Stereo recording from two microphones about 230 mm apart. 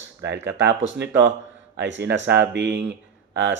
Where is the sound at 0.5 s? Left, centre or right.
Right.